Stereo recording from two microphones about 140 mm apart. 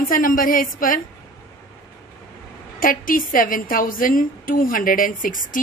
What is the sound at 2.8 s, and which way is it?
A woman's voice, 80° left.